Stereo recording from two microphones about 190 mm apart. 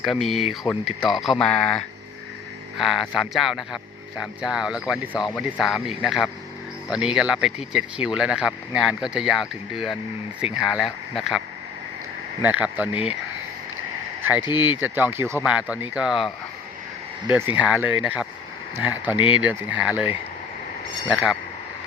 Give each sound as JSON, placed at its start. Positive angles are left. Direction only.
{"t": 0.0, "sound": "speech", "side_deg": 0}
{"t": 14.2, "sound": "a sound", "side_deg": -10}
{"t": 14.4, "sound": "speech", "side_deg": 25}
{"t": 14.8, "sound": "speech", "side_deg": -10}
{"t": 17.3, "sound": "speech", "side_deg": -10}